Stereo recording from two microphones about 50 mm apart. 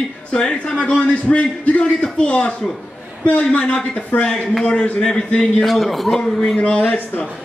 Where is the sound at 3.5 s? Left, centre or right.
Left.